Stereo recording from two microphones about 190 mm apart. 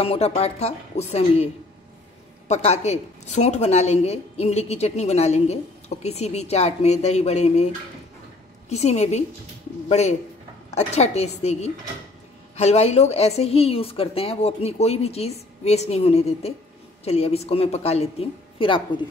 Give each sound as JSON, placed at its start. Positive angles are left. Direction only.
{"t": 0.0, "sound": "a woman's voice", "side_deg": 30}
{"t": 12.5, "sound": "a woman's voice", "side_deg": 35}